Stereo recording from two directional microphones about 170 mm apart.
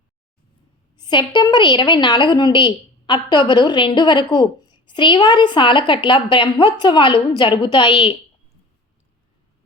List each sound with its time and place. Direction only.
1.0 s a woman's voice: 25° left (ahead or behind)